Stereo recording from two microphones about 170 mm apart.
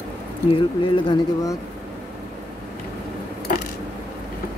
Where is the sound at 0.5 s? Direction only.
30° left (ahead or behind).